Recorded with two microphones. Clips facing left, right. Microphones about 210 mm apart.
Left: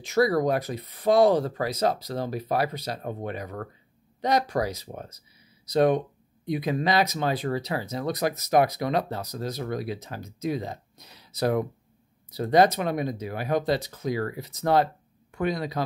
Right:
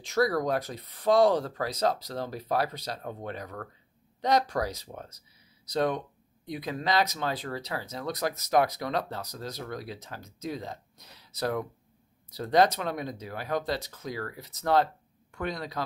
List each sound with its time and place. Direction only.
0.0 s speech: 5° left (ahead or behind)